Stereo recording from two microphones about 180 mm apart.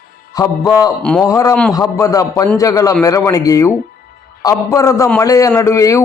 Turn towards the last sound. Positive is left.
turn(degrees=15)  # may be behind; listen again after turning